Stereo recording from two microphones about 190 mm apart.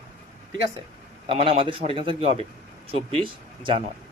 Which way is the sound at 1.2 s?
30° right (ahead or behind).